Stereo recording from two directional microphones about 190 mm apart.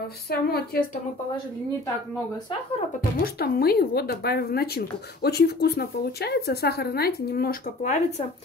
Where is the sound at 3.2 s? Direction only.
50° left (ahead or behind).